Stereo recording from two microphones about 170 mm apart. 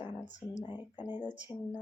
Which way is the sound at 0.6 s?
25° left (ahead or behind).